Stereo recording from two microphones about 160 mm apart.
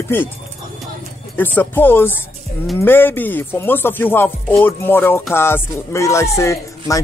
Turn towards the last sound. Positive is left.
turn(degrees=20)  # may be behind; listen again after turning